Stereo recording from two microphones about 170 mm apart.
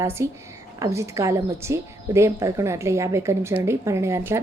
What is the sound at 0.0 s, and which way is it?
A woman's voice, 15° right (ahead or behind).